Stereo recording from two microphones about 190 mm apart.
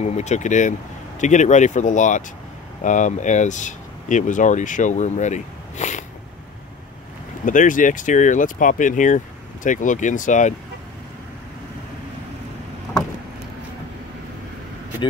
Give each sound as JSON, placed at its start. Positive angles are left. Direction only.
{"t": 0.0, "sound": "speech", "side_deg": 35}
{"t": 7.4, "sound": "speech", "side_deg": 45}